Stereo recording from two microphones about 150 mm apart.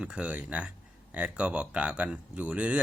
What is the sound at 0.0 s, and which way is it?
Speech, 5° right (ahead or behind).